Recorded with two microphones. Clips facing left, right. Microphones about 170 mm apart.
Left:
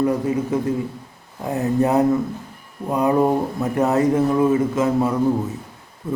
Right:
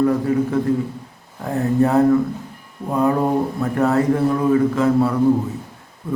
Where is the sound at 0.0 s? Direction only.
20° left (ahead or behind).